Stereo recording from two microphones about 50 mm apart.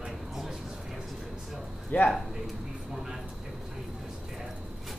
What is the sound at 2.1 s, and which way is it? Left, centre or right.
Chopping, centre.